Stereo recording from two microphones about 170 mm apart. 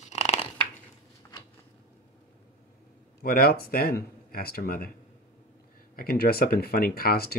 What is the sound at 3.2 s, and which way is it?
Speech, 65° left (ahead or behind).